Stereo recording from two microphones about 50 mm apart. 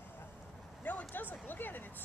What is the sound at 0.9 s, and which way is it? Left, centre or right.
Speech, left.